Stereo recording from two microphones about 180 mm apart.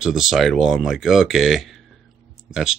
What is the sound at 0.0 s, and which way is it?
Speech, 5° right (ahead or behind).